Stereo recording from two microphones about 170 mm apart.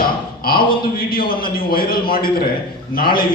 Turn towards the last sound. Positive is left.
turn(degrees=60)  # may be behind; listen again after turning